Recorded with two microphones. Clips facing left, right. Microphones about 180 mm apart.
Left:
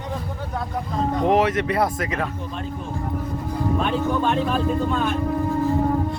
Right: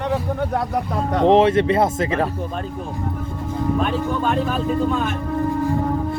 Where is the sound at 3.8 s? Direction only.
Centre (ahead or behind).